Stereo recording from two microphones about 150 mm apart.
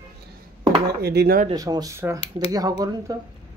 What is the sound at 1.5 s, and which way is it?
Speech, 25° right (ahead or behind).